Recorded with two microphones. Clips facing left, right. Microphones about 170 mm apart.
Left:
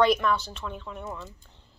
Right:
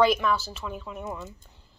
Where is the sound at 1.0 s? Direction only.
15° right (ahead or behind).